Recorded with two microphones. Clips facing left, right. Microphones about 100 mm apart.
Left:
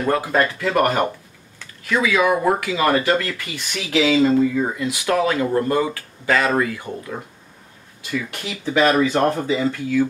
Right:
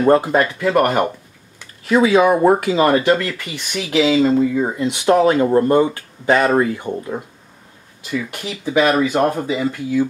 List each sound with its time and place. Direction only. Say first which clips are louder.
0.0 s speech: right 5 dB; 25° right (ahead or behind)
1.9 s speech: right 5 dB; 30° right (ahead or behind)
8.3 s speech: right 2 dB; 20° right (ahead or behind)